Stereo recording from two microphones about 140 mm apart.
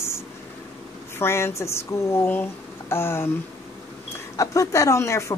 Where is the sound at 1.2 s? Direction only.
20° left (ahead or behind).